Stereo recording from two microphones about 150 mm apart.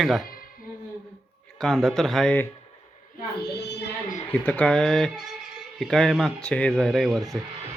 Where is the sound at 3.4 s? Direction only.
90° left.